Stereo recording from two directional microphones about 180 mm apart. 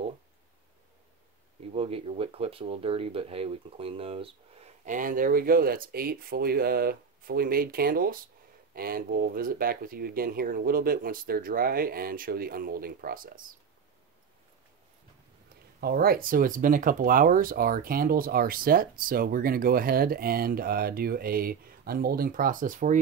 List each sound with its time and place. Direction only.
1.7 s speech: 35° right (ahead or behind)
4.8 s speech: 45° right (ahead or behind)
15.8 s speech: 60° right (ahead or behind)